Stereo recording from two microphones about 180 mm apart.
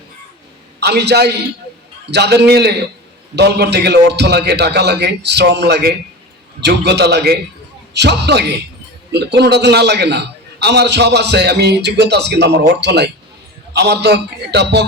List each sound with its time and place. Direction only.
0.8 s a man's voice: 70° right (ahead or behind)